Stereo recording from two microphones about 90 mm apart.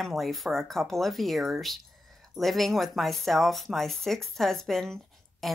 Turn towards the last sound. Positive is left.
turn(degrees=0)  # may be behind; listen again after turning